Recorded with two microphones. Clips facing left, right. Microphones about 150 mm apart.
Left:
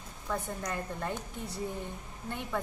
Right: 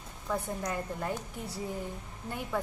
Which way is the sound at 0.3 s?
5° right (ahead or behind).